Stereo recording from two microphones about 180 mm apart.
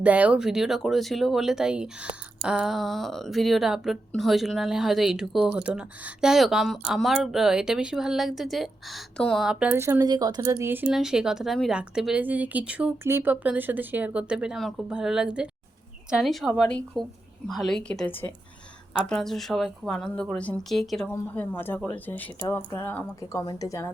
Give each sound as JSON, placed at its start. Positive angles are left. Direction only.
{"t": 0.0, "sound": "speech", "side_deg": -5}
{"t": 10.8, "sound": "a woman's voice", "side_deg": 0}